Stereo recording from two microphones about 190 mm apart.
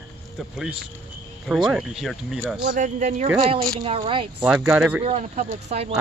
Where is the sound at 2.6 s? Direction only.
40° right (ahead or behind).